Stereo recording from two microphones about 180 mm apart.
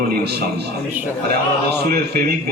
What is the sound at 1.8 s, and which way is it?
Speech, 60° right (ahead or behind).